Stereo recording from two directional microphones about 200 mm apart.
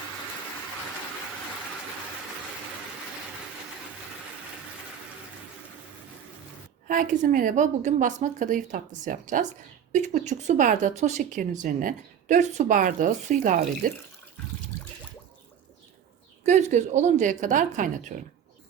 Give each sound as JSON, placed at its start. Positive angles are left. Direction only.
{"t": 6.8, "sound": "a woman's voice", "side_deg": -40}
{"t": 16.4, "sound": "a woman's voice", "side_deg": -35}